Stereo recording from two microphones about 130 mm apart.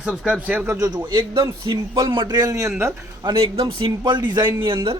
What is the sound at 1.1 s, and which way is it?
Speech, 35° right (ahead or behind).